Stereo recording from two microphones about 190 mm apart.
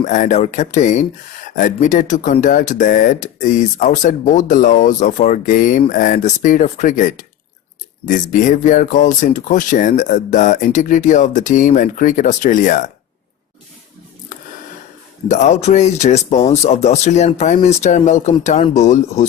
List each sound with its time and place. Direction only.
0.0 s speech: 40° left (ahead or behind)
15.3 s speech: 40° left (ahead or behind)